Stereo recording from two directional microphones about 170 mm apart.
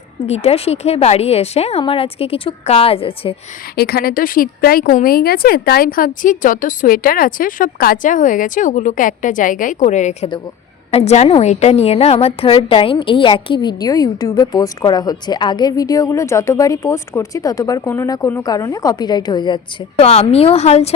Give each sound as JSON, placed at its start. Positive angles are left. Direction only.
{"t": 0.3, "sound": "a woman's voice", "side_deg": 40}
{"t": 3.8, "sound": "a woman's voice", "side_deg": 65}